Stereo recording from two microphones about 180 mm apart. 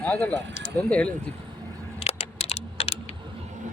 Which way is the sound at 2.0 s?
35° left (ahead or behind).